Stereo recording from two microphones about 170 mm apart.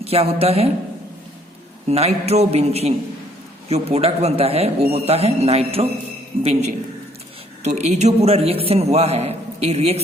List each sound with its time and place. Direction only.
0.0 s a man's voice: 35° right (ahead or behind)
1.9 s a man's voice: 40° right (ahead or behind)